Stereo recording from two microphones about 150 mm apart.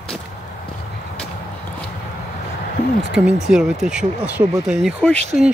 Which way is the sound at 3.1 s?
5° right (ahead or behind).